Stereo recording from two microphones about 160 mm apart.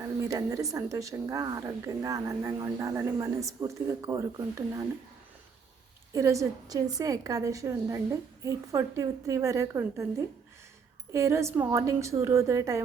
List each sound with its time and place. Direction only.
0.2 s a woman's voice: 20° right (ahead or behind)
6.1 s a woman's voice: 20° right (ahead or behind)